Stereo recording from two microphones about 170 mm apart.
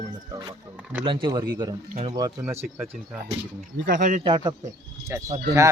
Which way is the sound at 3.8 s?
55° right (ahead or behind).